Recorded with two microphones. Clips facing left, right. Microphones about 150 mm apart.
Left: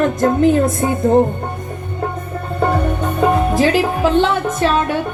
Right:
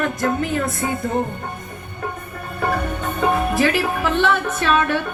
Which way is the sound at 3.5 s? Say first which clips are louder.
Left 4 dB; 20° left (ahead or behind).